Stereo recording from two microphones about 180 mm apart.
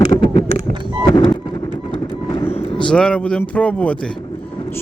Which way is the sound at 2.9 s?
5° left (ahead or behind).